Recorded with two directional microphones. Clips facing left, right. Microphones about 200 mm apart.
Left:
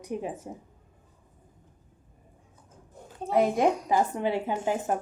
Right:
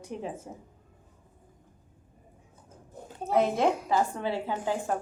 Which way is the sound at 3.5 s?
15° left (ahead or behind).